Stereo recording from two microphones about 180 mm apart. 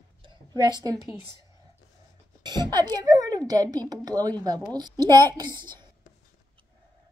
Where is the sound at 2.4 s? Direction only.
25° right (ahead or behind).